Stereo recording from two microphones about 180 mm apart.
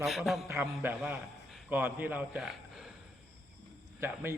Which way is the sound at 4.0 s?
10° right (ahead or behind).